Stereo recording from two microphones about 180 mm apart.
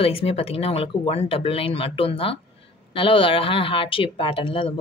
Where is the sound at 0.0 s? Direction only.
35° left (ahead or behind).